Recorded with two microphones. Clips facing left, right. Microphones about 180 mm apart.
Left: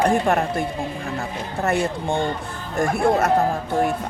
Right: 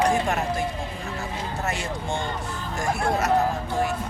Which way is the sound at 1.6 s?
55° left (ahead or behind).